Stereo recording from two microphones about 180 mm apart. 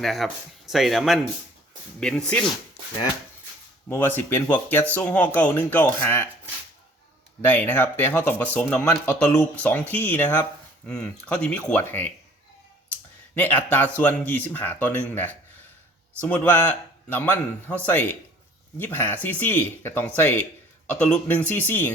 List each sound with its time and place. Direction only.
0.0 s speech: centre (ahead or behind)
2.5 s speech: 20° left (ahead or behind)
7.4 s speech: 10° left (ahead or behind)